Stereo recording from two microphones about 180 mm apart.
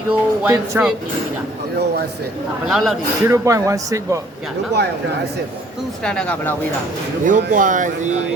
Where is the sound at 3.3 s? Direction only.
15° right (ahead or behind).